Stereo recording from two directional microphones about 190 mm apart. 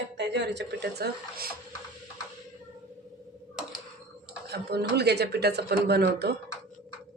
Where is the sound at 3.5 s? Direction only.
5° right (ahead or behind).